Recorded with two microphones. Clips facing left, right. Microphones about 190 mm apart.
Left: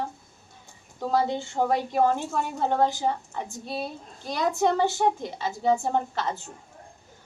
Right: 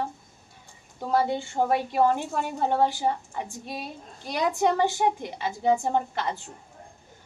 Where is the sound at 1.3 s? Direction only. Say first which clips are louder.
Even; 15° right (ahead or behind).